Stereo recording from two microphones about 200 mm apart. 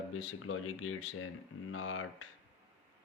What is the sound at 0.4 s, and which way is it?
Speech, 90° left.